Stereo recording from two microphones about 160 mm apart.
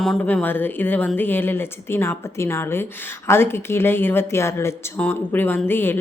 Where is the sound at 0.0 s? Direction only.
5° left (ahead or behind).